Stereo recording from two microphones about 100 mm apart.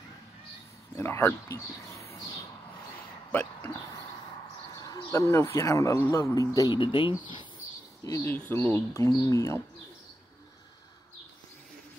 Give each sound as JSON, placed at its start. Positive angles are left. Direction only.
{"t": 0.9, "sound": "speech", "side_deg": 25}
{"t": 3.3, "sound": "a sound", "side_deg": 15}
{"t": 4.7, "sound": "speech", "side_deg": 40}
{"t": 6.7, "sound": "speech", "side_deg": 60}
{"t": 8.2, "sound": "speech", "side_deg": 20}